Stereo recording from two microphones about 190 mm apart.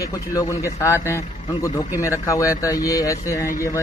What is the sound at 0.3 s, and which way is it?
A man's voice, 15° left (ahead or behind).